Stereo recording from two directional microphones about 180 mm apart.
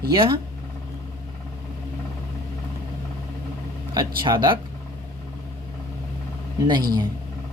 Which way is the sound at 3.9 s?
25° right (ahead or behind).